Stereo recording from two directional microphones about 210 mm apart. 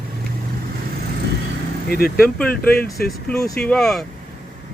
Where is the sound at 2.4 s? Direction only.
5° left (ahead or behind).